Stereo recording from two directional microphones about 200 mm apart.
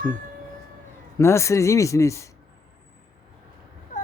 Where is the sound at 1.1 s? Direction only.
15° left (ahead or behind).